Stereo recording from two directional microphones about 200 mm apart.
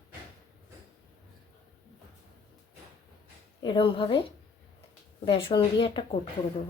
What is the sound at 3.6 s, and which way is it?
Speech, 25° left (ahead or behind).